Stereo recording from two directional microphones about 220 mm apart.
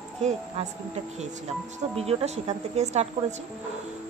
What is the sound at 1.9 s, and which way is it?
Speech, 30° right (ahead or behind).